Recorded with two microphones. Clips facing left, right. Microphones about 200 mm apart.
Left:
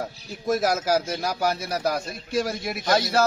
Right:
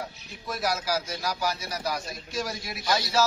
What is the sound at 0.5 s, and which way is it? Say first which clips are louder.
A man's voice: left 7 dB; 45° left (ahead or behind).